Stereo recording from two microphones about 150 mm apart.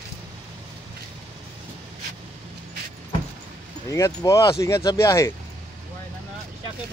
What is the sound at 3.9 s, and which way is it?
Speech, 20° left (ahead or behind).